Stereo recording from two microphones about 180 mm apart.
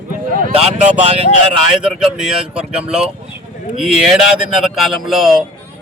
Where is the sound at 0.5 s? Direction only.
40° right (ahead or behind).